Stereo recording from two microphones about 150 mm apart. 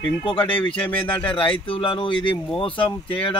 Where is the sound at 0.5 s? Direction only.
35° left (ahead or behind).